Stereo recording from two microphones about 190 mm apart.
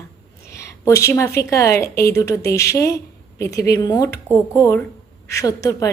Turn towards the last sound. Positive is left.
turn(degrees=20)  # may be behind; listen again after turning